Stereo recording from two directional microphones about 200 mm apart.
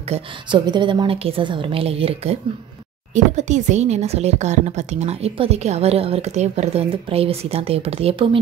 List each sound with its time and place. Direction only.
0.1 s a woman's voice: 25° right (ahead or behind)
3.3 s speech: 35° right (ahead or behind)